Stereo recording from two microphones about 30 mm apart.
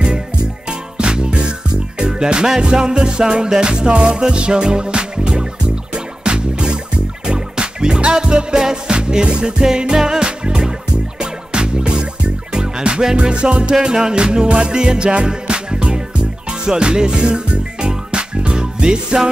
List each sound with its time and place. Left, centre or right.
0.7 s music: right
13.1 s music: right